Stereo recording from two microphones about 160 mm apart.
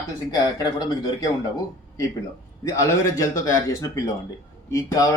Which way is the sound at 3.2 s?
20° left (ahead or behind).